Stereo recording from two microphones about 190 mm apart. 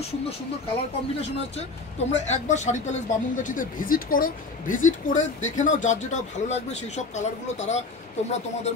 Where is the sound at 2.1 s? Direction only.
35° left (ahead or behind).